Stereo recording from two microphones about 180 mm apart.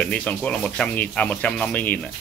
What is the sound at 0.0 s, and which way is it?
Speech, 5° left (ahead or behind).